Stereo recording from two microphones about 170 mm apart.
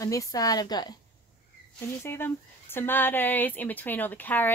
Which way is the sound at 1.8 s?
15° left (ahead or behind).